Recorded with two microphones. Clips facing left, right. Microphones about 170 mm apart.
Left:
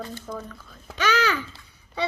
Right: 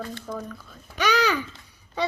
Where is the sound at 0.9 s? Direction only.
15° right (ahead or behind).